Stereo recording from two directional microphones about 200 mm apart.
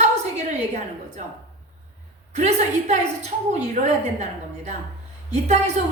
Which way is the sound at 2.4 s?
35° right (ahead or behind).